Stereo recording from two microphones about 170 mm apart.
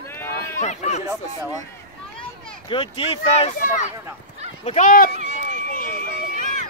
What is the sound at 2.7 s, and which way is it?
Speech, 35° left (ahead or behind).